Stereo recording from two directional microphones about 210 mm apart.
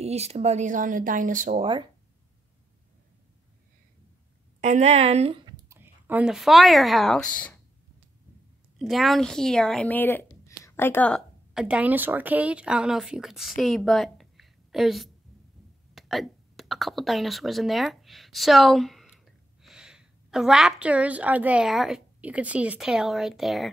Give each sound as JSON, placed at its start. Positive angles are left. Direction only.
{"t": 0.0, "sound": "speech", "side_deg": -30}
{"t": 4.6, "sound": "speech", "side_deg": -35}
{"t": 5.8, "sound": "a woman's voice", "side_deg": -10}
{"t": 8.7, "sound": "a woman's voice", "side_deg": 0}